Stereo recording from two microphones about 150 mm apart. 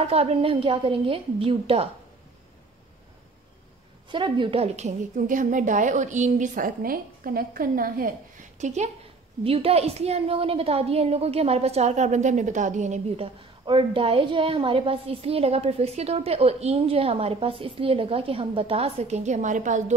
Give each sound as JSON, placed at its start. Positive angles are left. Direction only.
{"t": 0.0, "sound": "a woman's voice", "side_deg": -40}
{"t": 4.1, "sound": "a woman's voice", "side_deg": -35}
{"t": 9.4, "sound": "a woman's voice", "side_deg": -40}